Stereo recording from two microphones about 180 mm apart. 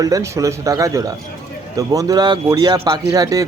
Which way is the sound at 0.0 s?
15° right (ahead or behind).